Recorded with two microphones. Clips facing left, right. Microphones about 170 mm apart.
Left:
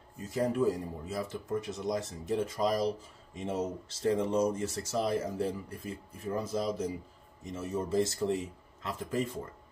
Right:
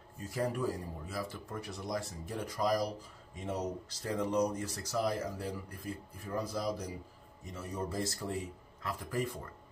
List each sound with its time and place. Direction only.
0.3 s speech: 20° left (ahead or behind)